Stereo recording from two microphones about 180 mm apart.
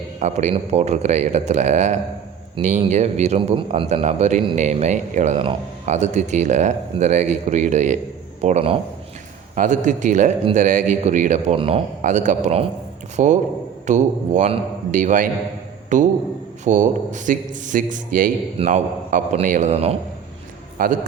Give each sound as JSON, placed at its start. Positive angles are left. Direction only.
{"t": 0.2, "sound": "a man's voice", "side_deg": -40}
{"t": 12.0, "sound": "a man's voice", "side_deg": -45}
{"t": 20.7, "sound": "speech", "side_deg": -50}